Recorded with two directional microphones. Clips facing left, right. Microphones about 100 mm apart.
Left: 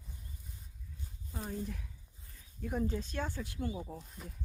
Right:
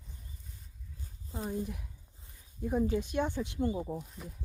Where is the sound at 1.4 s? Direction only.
15° right (ahead or behind).